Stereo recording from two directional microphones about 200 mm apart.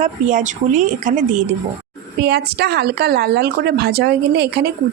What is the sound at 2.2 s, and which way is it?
Speech, 55° right (ahead or behind).